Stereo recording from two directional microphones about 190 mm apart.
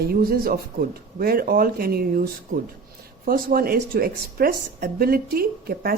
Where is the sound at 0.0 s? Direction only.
50° right (ahead or behind).